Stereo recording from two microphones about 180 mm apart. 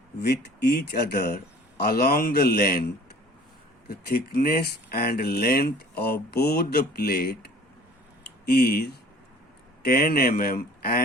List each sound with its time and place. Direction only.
0.2 s speech: 65° left (ahead or behind)
3.8 s speech: 55° left (ahead or behind)
8.4 s speech: 60° left (ahead or behind)